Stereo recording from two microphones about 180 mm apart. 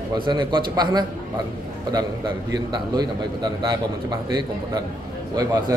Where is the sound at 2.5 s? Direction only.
25° right (ahead or behind).